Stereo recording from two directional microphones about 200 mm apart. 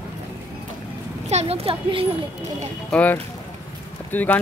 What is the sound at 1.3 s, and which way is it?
Speech, 30° right (ahead or behind).